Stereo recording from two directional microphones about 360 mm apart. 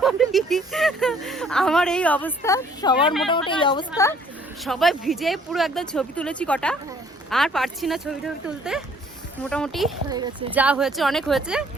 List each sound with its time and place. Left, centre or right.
0.0 s a woman's voice: centre
4.6 s speech: centre
10.1 s speech: centre